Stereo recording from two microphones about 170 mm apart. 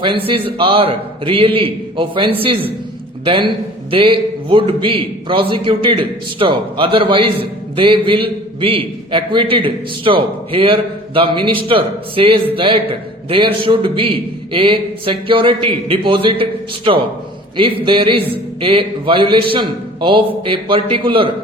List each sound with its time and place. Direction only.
0.0 s a man's voice: 30° right (ahead or behind)